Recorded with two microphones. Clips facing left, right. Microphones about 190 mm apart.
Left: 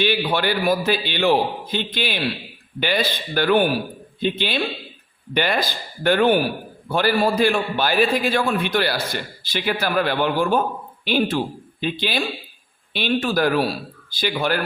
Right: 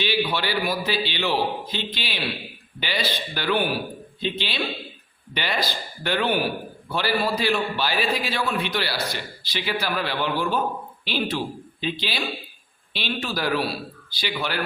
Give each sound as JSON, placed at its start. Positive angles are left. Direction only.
{"t": 0.0, "sound": "a man's voice", "side_deg": 50}